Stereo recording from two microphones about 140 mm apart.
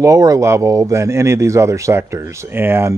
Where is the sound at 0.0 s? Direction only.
25° right (ahead or behind).